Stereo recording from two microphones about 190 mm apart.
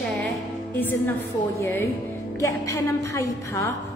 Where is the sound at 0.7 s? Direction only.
10° left (ahead or behind).